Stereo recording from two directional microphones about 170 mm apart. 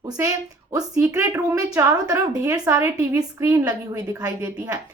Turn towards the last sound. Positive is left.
turn(degrees=-20)  # may be behind; listen again after turning